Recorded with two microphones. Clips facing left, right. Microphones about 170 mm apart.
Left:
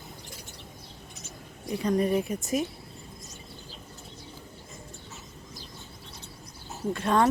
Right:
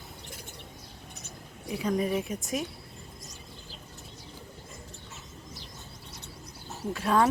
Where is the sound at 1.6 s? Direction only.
5° right (ahead or behind).